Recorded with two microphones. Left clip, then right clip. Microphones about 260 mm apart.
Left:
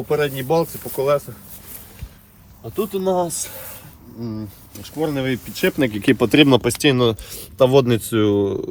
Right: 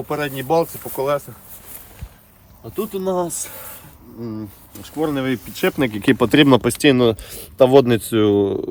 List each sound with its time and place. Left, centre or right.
0.1 s speech: centre
2.7 s speech: centre; by 8.6 s right